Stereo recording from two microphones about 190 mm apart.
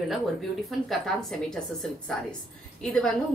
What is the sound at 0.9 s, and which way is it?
Speech, centre (ahead or behind).